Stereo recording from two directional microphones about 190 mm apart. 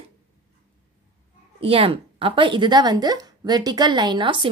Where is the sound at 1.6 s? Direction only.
30° right (ahead or behind).